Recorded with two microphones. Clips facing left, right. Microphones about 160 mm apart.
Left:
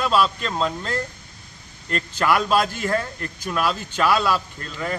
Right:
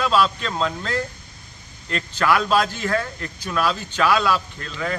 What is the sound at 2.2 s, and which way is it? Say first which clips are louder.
A man's voice: right 1 dB; 10° left (ahead or behind).